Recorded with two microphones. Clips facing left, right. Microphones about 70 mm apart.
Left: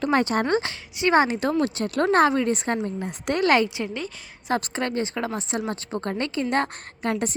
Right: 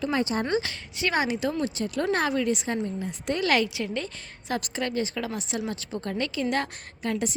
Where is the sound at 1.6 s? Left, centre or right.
Left.